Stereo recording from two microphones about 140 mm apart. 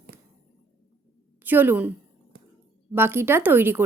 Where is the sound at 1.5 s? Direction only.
15° right (ahead or behind).